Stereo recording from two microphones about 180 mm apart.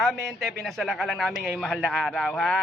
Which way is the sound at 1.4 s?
10° right (ahead or behind).